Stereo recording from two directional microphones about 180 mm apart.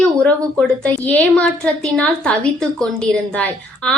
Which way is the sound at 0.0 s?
5° left (ahead or behind).